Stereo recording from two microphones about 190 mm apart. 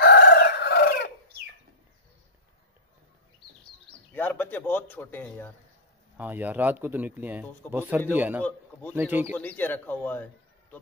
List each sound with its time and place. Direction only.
0.0 s chicken: 60° left (ahead or behind)
4.1 s a man's voice: 10° left (ahead or behind)
6.1 s speech: 10° right (ahead or behind)
7.6 s a man's voice: 10° left (ahead or behind)
8.1 s speech: 10° right (ahead or behind)
8.4 s a man's voice: 10° left (ahead or behind)
8.9 s speech: 10° right (ahead or behind)
9.4 s a man's voice: 10° left (ahead or behind)